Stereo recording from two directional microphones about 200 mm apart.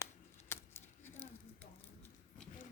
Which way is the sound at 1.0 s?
10° left (ahead or behind).